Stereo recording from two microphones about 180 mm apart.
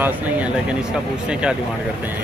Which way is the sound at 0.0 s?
10° right (ahead or behind).